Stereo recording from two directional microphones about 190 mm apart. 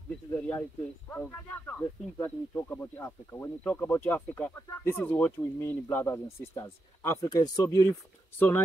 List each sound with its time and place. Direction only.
0.3 s speech: 10° left (ahead or behind)